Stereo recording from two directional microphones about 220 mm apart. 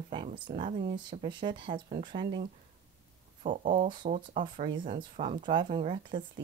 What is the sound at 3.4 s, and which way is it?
Speech, 35° right (ahead or behind).